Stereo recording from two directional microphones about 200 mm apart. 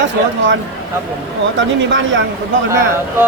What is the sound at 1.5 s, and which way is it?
Speech, 65° right (ahead or behind).